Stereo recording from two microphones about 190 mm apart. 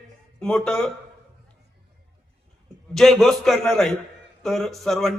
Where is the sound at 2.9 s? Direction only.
Centre (ahead or behind).